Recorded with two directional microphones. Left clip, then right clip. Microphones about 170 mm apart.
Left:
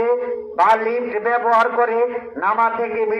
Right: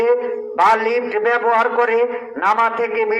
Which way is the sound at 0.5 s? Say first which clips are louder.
Right 1 dB; 25° right (ahead or behind).